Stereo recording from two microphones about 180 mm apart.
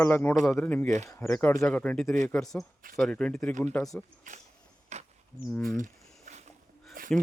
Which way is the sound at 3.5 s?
45° right (ahead or behind).